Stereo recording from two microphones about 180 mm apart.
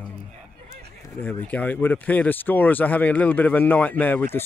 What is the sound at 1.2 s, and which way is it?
Speech, 10° left (ahead or behind).